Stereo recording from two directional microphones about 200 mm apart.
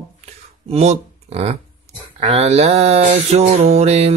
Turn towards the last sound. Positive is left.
turn(degrees=-30)  # may be behind; listen again after turning